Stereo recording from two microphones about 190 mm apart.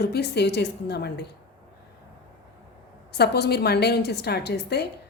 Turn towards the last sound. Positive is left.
turn(degrees=60)  # may be behind; listen again after turning